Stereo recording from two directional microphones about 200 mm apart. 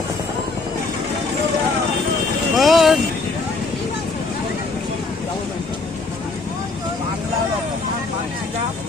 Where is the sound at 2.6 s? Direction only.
Centre (ahead or behind).